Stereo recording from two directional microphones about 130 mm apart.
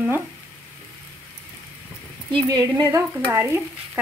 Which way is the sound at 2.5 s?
35° right (ahead or behind).